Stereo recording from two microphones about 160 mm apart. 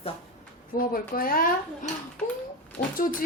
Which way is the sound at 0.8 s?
65° left (ahead or behind).